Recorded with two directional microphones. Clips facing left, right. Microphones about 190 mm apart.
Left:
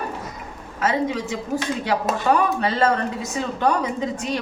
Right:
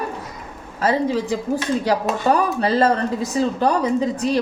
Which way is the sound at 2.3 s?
35° right (ahead or behind).